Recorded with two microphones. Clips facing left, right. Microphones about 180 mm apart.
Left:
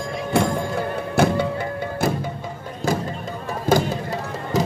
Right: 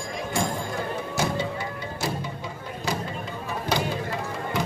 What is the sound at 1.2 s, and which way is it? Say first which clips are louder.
Music: left 9 dB; 60° left (ahead or behind).